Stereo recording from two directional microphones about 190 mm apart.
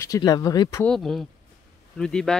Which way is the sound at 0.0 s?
20° left (ahead or behind).